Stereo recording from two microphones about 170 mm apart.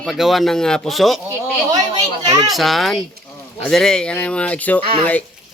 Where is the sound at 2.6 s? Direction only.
Centre (ahead or behind).